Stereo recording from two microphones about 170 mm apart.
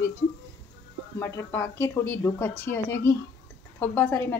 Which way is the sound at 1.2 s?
15° left (ahead or behind).